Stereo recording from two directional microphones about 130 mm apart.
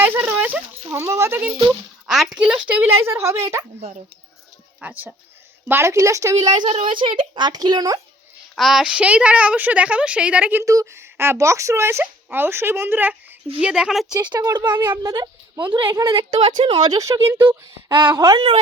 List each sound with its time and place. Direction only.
0.0 s a sound: 15° right (ahead or behind)
0.9 s speech: 20° right (ahead or behind)
2.0 s a woman's voice: 5° right (ahead or behind); by 3.4 s 20° right (ahead or behind)
3.8 s speech: 55° right (ahead or behind)
4.8 s a woman's voice: 15° right (ahead or behind); by 6.7 s 30° right (ahead or behind)
6.7 s a woman's voice: 45° right (ahead or behind)
8.5 s a woman's voice: centre (ahead or behind)
10.6 s a woman's voice: 25° right (ahead or behind); by 14.1 s 5° right (ahead or behind)
14.1 s a woman's voice: 30° right (ahead or behind)
17.5 s speech: 30° right (ahead or behind)
18.3 s a woman's voice: 40° right (ahead or behind)